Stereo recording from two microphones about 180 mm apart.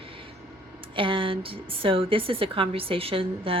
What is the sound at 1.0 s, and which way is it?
A woman's voice, 30° right (ahead or behind).